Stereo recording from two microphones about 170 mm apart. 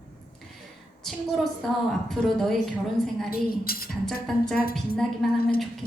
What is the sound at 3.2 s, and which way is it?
Speech, 60° left (ahead or behind).